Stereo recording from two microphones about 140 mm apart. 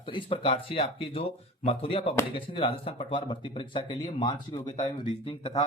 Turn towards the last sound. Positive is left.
turn(degrees=40)  # may be behind; listen again after turning